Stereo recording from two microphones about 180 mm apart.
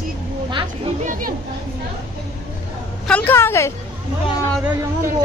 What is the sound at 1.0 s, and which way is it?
Speech, 45° right (ahead or behind).